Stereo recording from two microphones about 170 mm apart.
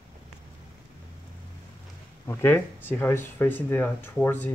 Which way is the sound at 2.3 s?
15° left (ahead or behind).